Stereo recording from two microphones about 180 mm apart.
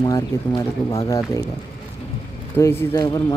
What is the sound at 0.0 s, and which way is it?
A man's voice, 20° left (ahead or behind).